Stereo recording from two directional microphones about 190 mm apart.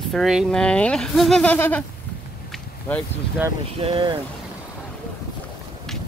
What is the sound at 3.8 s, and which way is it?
Speech, 25° right (ahead or behind).